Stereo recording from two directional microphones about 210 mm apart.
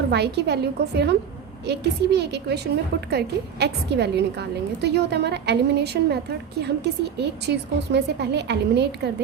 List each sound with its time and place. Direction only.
0.1 s a woman's voice: 50° right (ahead or behind)